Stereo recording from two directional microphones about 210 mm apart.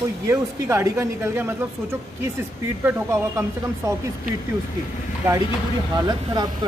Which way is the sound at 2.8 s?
10° right (ahead or behind).